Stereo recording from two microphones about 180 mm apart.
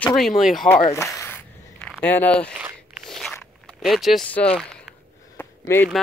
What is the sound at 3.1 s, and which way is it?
Biting, centre (ahead or behind).